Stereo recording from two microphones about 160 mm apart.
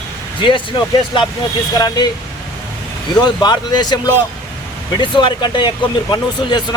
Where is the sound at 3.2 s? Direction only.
25° left (ahead or behind).